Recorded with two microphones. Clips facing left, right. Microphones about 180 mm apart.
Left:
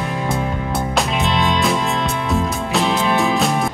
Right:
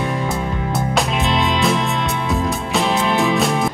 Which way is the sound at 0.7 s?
Centre (ahead or behind).